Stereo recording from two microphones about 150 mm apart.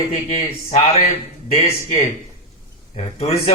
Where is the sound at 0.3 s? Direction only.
45° left (ahead or behind).